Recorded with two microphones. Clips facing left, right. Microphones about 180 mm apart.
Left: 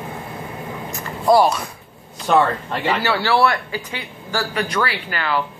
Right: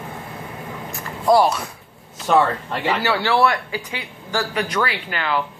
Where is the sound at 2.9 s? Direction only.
15° right (ahead or behind).